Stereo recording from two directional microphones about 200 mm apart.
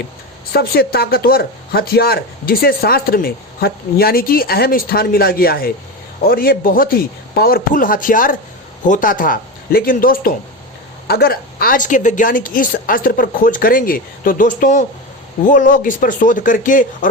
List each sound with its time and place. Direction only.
0.5 s speech: 50° left (ahead or behind)